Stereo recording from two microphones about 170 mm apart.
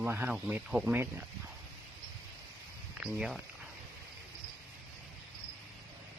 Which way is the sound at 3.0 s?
5° right (ahead or behind).